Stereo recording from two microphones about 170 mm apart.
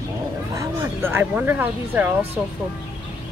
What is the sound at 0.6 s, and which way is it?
Speech, 15° right (ahead or behind).